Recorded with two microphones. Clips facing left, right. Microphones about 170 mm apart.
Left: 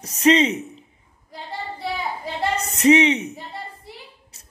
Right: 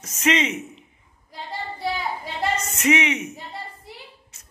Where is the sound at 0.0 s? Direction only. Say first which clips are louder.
Left 6 dB; 35° left (ahead or behind).